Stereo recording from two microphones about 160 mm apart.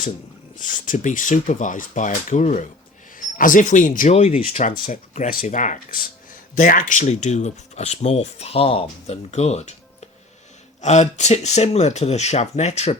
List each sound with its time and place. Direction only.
0.5 s speech: 55° left (ahead or behind)
10.8 s speech: 45° left (ahead or behind)